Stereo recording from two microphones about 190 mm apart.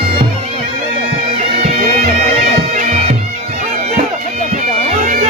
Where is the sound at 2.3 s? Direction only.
40° right (ahead or behind).